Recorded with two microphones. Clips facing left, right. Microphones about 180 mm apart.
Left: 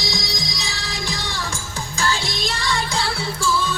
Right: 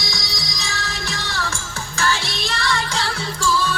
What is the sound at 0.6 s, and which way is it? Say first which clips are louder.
Music: right 1 dB; 15° left (ahead or behind).